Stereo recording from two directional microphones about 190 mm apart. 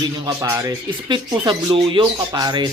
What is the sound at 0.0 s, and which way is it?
Speech, 20° right (ahead or behind).